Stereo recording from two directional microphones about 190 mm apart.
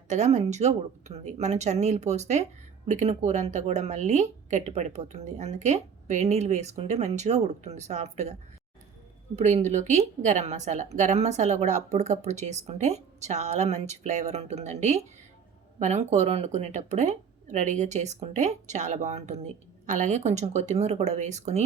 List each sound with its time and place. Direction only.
0.1 s speech: 35° right (ahead or behind)